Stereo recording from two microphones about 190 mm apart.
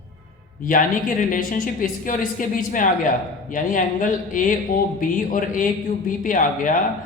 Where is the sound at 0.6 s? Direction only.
45° left (ahead or behind).